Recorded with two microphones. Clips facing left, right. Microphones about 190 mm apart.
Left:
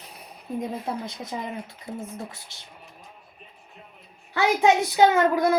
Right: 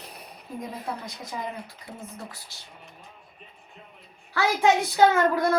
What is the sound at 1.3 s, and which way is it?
Speech, 25° left (ahead or behind).